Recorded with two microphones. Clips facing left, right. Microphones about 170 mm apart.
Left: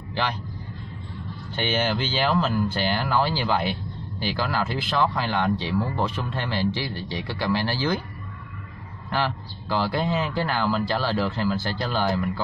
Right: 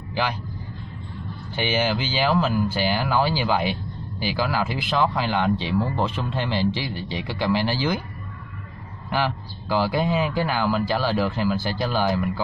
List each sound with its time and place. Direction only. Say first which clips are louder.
0.1 s a man's voice: right 2 dB; 10° right (ahead or behind)
1.5 s speech: right 2 dB; 10° right (ahead or behind)
9.1 s speech: right 2 dB; 10° right (ahead or behind)